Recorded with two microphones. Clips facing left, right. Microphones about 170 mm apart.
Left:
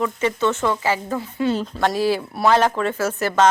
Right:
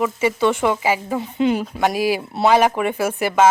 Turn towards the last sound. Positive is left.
turn(degrees=-15)  # may be behind; listen again after turning